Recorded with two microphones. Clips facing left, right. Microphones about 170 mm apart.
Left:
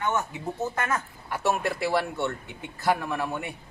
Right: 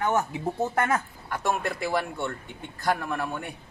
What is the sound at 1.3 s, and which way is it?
A man's voice, 5° left (ahead or behind).